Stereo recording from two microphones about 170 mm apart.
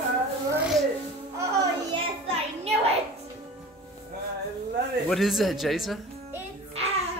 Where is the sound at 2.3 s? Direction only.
40° right (ahead or behind).